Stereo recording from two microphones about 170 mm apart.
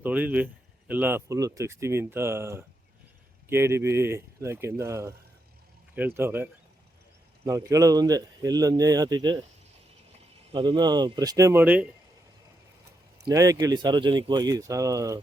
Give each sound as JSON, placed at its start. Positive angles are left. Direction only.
{"t": 0.0, "sound": "speech", "side_deg": -10}
{"t": 10.5, "sound": "speech", "side_deg": -25}
{"t": 13.2, "sound": "speech", "side_deg": -20}